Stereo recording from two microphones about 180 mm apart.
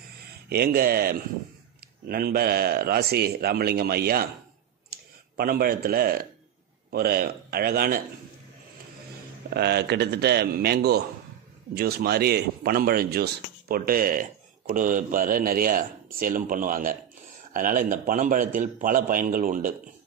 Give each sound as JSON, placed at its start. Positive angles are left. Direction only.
{"t": 0.5, "sound": "a man's voice", "side_deg": -60}
{"t": 5.4, "sound": "a man's voice", "side_deg": -55}
{"t": 9.5, "sound": "a man's voice", "side_deg": -65}